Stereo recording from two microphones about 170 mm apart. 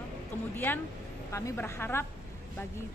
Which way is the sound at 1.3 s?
15° left (ahead or behind).